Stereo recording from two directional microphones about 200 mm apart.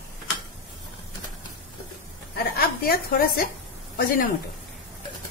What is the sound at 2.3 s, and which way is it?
A woman's voice, 45° left (ahead or behind).